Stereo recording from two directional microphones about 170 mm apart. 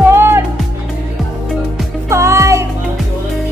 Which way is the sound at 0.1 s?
15° right (ahead or behind).